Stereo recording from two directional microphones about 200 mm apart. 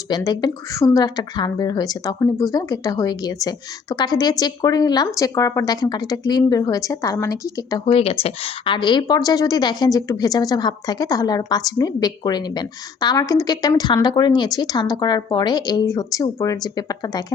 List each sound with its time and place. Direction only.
0.2 s a woman's voice: 15° left (ahead or behind)
7.9 s a woman's voice: 30° left (ahead or behind)